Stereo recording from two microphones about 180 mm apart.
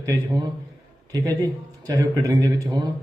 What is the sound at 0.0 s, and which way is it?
A man's voice, 20° right (ahead or behind).